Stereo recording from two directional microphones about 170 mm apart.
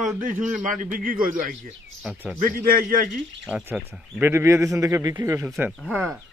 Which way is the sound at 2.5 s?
55° right (ahead or behind).